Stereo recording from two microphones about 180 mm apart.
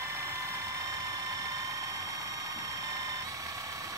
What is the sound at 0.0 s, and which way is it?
Vehicle, 15° right (ahead or behind).